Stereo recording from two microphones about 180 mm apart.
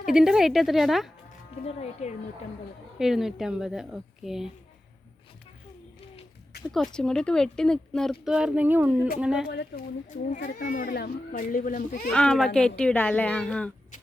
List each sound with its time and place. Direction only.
0.0 s a child's voice: 5° right (ahead or behind)
1.6 s speech: 35° left (ahead or behind)
3.0 s a child's voice: centre (ahead or behind)
6.7 s a child's voice: centre (ahead or behind)
9.5 s speech: 65° left (ahead or behind)
10.1 s speech: 45° left (ahead or behind)
12.1 s a child's voice: 5° left (ahead or behind)